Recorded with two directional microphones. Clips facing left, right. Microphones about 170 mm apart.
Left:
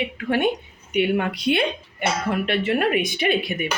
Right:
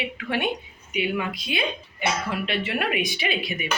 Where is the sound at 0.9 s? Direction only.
60° left (ahead or behind).